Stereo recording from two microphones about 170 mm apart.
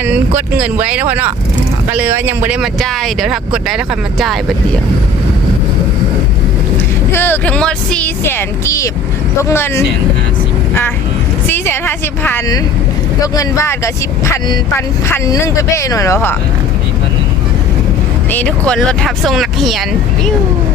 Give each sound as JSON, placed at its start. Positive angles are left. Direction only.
{"t": 0.0, "sound": "speech", "side_deg": -10}
{"t": 2.8, "sound": "speech", "side_deg": 0}
{"t": 7.1, "sound": "speech", "side_deg": 10}
{"t": 11.4, "sound": "a woman's voice", "side_deg": 15}
{"t": 18.3, "sound": "speech", "side_deg": 10}